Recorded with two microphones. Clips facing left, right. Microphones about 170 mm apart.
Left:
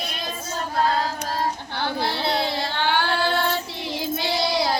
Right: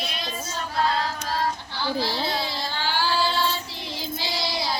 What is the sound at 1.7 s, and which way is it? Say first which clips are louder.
Child singing: left 1 dB; 60° left (ahead or behind).